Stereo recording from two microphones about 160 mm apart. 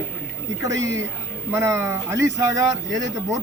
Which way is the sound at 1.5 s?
15° right (ahead or behind).